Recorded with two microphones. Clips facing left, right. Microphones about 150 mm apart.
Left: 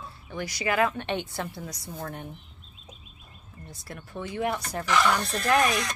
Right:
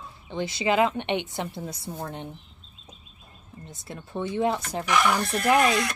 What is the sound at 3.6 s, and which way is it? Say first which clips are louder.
Speech: right 2 dB; 20° right (ahead or behind).